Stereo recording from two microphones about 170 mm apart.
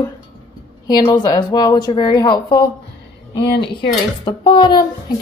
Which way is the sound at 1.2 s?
25° left (ahead or behind).